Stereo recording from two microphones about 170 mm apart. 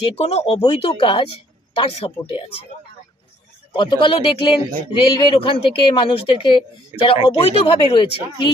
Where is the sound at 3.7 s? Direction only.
30° left (ahead or behind).